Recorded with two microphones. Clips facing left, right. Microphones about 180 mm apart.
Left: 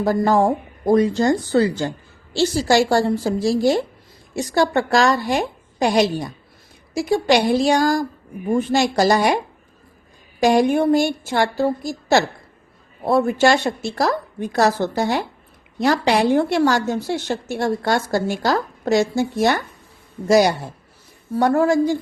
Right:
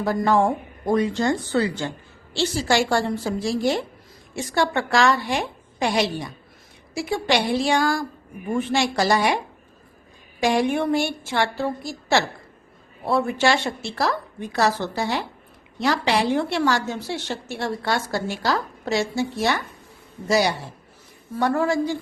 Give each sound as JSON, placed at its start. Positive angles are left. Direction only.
{"t": 0.0, "sound": "a woman's voice", "side_deg": 40}
{"t": 10.4, "sound": "a woman's voice", "side_deg": 40}